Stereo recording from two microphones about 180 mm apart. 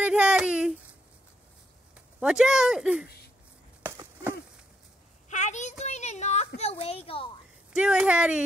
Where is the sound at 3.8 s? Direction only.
15° right (ahead or behind).